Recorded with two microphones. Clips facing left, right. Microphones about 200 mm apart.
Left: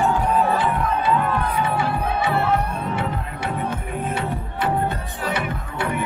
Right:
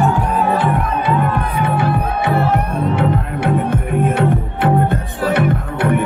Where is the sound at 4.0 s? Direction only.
60° right (ahead or behind).